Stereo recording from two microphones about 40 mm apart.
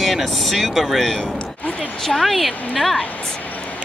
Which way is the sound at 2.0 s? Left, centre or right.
Centre.